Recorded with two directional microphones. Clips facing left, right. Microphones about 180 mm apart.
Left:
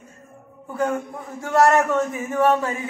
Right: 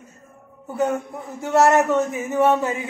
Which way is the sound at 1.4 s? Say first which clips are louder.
Right 1 dB; 20° right (ahead or behind).